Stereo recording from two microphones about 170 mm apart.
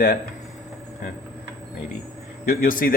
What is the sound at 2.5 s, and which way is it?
Speech, 55° left (ahead or behind).